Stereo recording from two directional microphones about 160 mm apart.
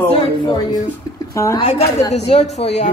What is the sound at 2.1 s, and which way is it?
Speech, 40° left (ahead or behind).